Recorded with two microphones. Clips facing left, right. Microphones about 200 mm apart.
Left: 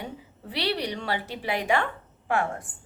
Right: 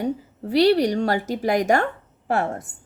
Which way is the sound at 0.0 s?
45° right (ahead or behind).